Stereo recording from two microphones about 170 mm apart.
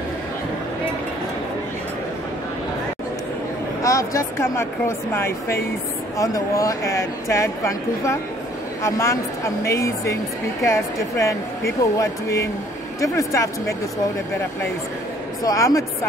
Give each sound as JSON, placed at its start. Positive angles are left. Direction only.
{"t": 3.8, "sound": "speech", "side_deg": 20}
{"t": 15.4, "sound": "speech", "side_deg": 20}